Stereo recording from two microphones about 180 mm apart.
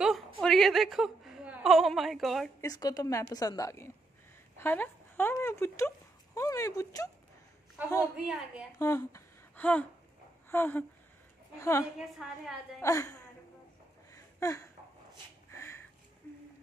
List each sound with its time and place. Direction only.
0.0 s a sound: centre (ahead or behind)
2.6 s a woman's voice: 20° left (ahead or behind)
8.2 s a woman's voice: 5° right (ahead or behind)
8.7 s a woman's voice: 15° left (ahead or behind)
11.8 s a woman's voice: centre (ahead or behind)
12.8 s speech: 15° left (ahead or behind)
14.1 s a sound: 15° left (ahead or behind)
15.5 s sniff: 15° left (ahead or behind)